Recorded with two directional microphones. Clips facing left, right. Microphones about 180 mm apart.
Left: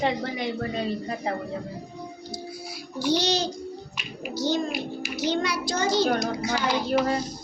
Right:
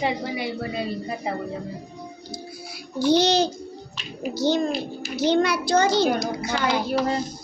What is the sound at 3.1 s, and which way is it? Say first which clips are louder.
A child's voice: right 6 dB; 55° right (ahead or behind).